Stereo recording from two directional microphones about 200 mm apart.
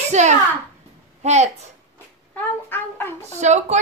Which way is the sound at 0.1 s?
35° right (ahead or behind).